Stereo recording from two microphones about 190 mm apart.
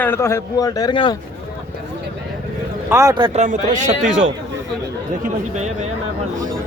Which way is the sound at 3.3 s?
40° right (ahead or behind).